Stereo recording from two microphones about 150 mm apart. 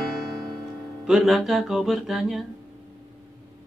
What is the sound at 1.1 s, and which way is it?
Music, centre (ahead or behind).